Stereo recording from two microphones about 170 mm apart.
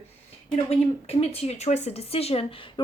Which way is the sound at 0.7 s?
35° left (ahead or behind).